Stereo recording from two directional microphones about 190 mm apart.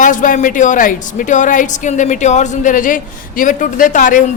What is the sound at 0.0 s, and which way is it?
Speech, 45° left (ahead or behind).